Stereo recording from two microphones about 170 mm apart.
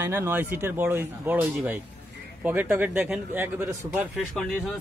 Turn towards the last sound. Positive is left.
turn(degrees=0)  # may be behind; listen again after turning